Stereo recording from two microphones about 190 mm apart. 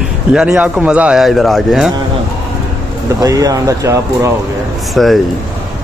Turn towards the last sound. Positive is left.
turn(degrees=0)  # may be behind; listen again after turning